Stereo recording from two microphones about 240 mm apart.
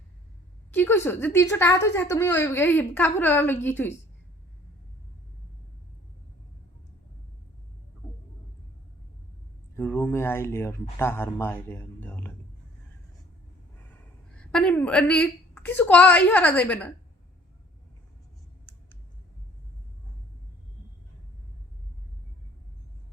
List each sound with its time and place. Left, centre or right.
0.7 s a woman's voice: centre
9.7 s speech: centre
14.3 s a woman's voice: centre